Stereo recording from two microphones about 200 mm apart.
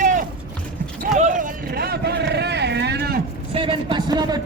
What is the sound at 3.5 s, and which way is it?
Speech, 25° right (ahead or behind).